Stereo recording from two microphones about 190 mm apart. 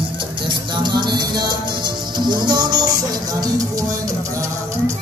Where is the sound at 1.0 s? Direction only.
20° right (ahead or behind).